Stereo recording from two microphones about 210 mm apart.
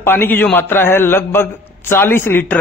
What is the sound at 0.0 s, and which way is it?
Speech, 10° left (ahead or behind).